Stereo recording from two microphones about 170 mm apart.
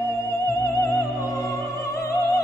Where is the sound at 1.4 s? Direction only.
15° left (ahead or behind).